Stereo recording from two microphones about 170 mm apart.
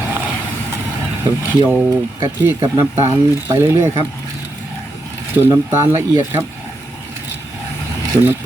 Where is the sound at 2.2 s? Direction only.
15° right (ahead or behind).